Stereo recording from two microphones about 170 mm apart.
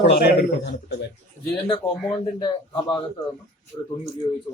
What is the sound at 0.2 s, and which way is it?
Speech, 80° left.